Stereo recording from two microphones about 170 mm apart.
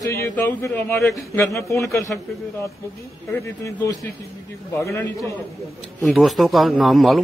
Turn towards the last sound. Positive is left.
turn(degrees=0)  # may be behind; listen again after turning